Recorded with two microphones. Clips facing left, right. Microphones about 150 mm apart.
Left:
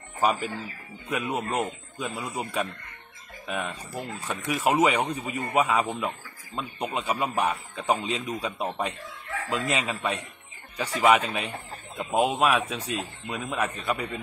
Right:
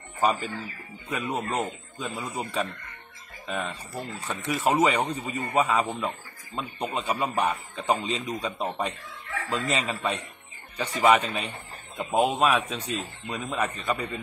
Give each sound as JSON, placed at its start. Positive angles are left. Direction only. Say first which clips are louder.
{"t": 0.2, "sound": "speech", "louder": "even", "side_deg": 10}